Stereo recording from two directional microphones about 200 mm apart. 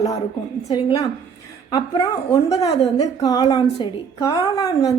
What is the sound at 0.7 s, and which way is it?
A woman's voice, 20° left (ahead or behind).